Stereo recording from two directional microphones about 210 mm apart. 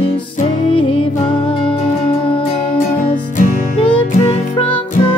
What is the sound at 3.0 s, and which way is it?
Music, 40° left (ahead or behind).